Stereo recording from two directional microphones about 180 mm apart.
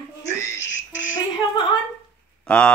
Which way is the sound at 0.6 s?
90° left.